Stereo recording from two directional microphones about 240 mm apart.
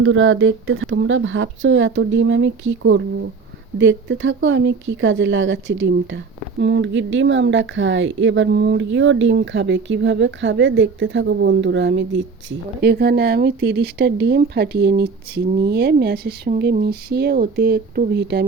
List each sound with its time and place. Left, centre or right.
0.0 s speech: right